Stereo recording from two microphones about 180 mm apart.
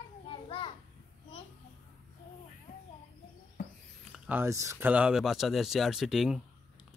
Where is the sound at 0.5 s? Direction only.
30° left (ahead or behind).